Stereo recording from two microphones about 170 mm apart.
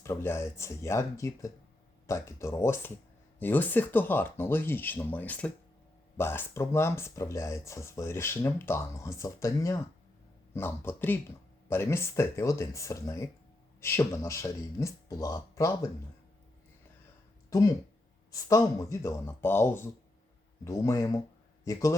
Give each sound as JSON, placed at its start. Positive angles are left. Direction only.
{"t": 0.0, "sound": "speech", "side_deg": 15}
{"t": 17.5, "sound": "a man's voice", "side_deg": 20}